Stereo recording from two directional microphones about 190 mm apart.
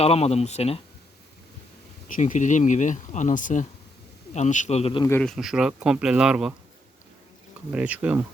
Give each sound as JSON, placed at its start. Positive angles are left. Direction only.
{"t": 0.0, "sound": "speech", "side_deg": 35}
{"t": 2.0, "sound": "speech", "side_deg": 45}
{"t": 5.2, "sound": "speech", "side_deg": 0}
{"t": 7.7, "sound": "speech", "side_deg": -10}